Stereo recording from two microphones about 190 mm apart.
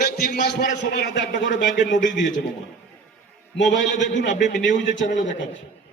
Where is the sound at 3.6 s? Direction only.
70° left (ahead or behind).